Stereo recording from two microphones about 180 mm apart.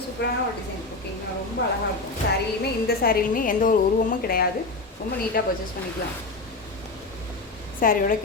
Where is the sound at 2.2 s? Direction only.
65° left (ahead or behind).